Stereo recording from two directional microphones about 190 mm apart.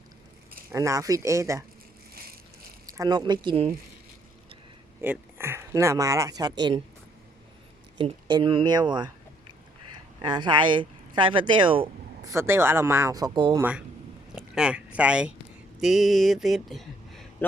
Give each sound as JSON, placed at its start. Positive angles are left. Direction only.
{"t": 0.7, "sound": "speech", "side_deg": -15}
{"t": 3.0, "sound": "speech", "side_deg": -20}
{"t": 4.9, "sound": "speech", "side_deg": -15}
{"t": 7.9, "sound": "speech", "side_deg": -25}
{"t": 10.2, "sound": "speech", "side_deg": -20}
{"t": 12.3, "sound": "speech", "side_deg": -15}
{"t": 13.6, "sound": "speech", "side_deg": -5}